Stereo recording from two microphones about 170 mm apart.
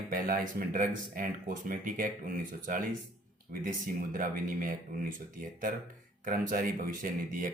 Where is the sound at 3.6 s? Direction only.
55° right (ahead or behind).